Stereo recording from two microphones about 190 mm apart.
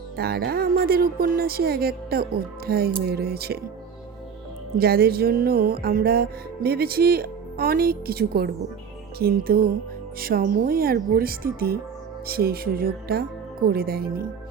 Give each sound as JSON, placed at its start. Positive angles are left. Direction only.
{"t": 0.2, "sound": "music", "side_deg": -55}
{"t": 4.8, "sound": "music", "side_deg": -55}